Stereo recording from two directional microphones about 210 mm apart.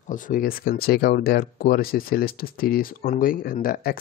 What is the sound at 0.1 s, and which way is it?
Speech, 40° left (ahead or behind).